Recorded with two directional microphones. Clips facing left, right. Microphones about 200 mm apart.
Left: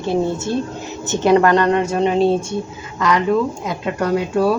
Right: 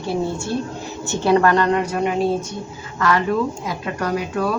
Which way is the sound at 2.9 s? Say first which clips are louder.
Left 2 dB; 15° left (ahead or behind).